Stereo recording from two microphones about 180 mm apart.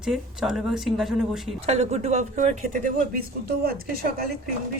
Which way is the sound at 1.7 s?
35° right (ahead or behind).